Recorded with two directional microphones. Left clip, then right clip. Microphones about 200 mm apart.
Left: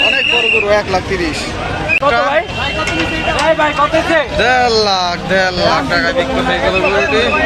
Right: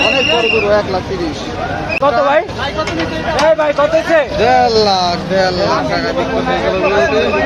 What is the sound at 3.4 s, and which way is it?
Speech, 45° right (ahead or behind).